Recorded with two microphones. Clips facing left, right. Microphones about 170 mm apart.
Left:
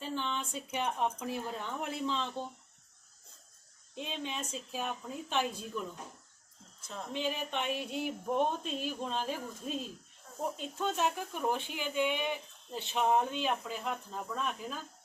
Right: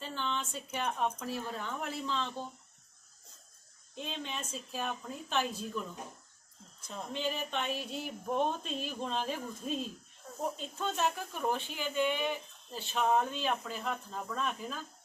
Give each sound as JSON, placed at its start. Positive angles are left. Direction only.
{"t": 0.0, "sound": "a woman's voice", "side_deg": 10}
{"t": 3.9, "sound": "speech", "side_deg": 10}
{"t": 7.1, "sound": "speech", "side_deg": 15}